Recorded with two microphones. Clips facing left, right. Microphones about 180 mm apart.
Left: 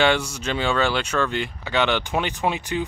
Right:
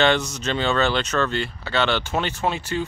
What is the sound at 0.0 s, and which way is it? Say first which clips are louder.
Speech: right 1 dB; 10° left (ahead or behind).